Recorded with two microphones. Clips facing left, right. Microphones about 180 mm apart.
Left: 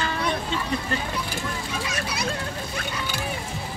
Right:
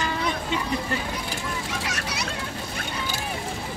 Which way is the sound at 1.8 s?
75° right (ahead or behind).